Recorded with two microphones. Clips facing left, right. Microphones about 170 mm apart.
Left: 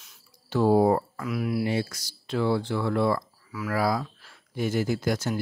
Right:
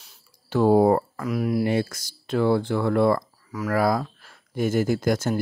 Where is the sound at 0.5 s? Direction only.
55° right (ahead or behind).